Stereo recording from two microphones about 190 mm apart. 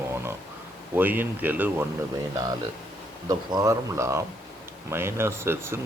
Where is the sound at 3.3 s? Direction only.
15° right (ahead or behind).